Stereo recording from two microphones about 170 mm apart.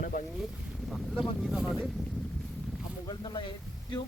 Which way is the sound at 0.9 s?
Centre (ahead or behind).